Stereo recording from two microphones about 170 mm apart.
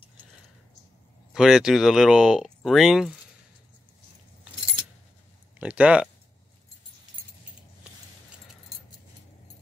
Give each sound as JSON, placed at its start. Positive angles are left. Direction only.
{"t": 1.3, "sound": "speech", "side_deg": -5}
{"t": 5.6, "sound": "speech", "side_deg": -5}